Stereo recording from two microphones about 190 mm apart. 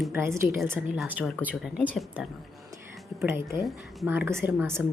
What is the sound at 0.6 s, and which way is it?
A woman's voice, 10° right (ahead or behind).